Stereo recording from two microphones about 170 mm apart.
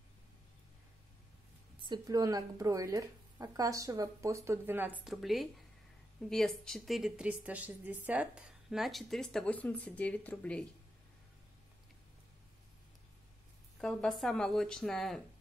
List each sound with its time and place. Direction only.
1.9 s a woman's voice: 20° right (ahead or behind); by 10.6 s 10° left (ahead or behind)
13.7 s a woman's voice: centre (ahead or behind)